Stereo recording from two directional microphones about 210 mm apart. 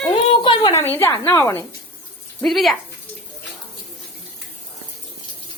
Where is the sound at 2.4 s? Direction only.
Centre (ahead or behind).